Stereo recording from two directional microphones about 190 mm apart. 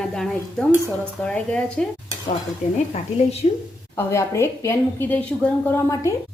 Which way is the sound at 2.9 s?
35° left (ahead or behind).